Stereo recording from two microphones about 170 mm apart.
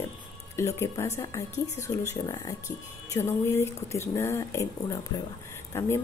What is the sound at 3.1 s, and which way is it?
A woman's voice, 15° left (ahead or behind).